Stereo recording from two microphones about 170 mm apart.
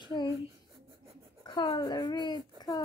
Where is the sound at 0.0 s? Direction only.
25° left (ahead or behind).